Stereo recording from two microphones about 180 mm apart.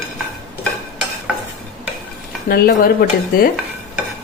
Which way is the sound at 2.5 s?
55° left (ahead or behind).